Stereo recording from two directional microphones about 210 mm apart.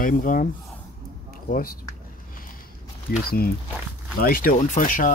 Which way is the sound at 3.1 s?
45° left (ahead or behind).